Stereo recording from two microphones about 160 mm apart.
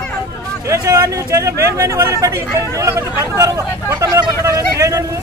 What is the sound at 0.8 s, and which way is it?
Speech, 20° right (ahead or behind).